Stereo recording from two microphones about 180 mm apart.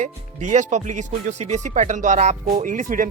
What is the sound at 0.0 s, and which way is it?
Speech, 40° right (ahead or behind).